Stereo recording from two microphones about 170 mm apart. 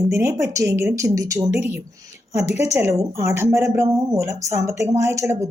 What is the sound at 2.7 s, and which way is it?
Speech, 15° right (ahead or behind).